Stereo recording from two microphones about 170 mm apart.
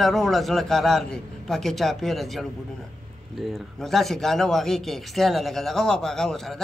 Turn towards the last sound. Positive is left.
turn(degrees=5)  # may be behind; listen again after turning